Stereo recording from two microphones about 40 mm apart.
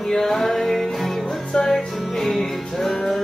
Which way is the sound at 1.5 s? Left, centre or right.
Centre.